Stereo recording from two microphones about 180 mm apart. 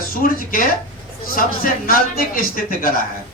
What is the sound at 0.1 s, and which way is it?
Speech, 50° left (ahead or behind).